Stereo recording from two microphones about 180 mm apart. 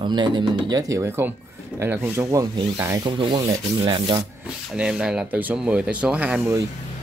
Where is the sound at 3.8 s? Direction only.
30° right (ahead or behind).